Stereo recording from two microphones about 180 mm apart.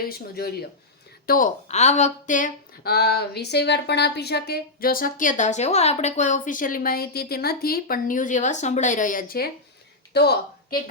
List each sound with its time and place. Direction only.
0.0 s speech: 60° left (ahead or behind)
1.3 s speech: 45° left (ahead or behind)
10.1 s a sound: 65° left (ahead or behind)